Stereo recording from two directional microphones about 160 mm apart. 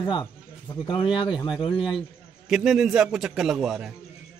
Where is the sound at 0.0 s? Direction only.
25° left (ahead or behind).